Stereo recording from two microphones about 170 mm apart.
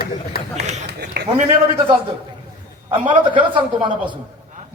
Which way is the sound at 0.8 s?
80° right.